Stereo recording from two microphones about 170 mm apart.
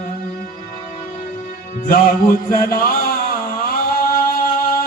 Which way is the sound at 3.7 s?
60° left (ahead or behind).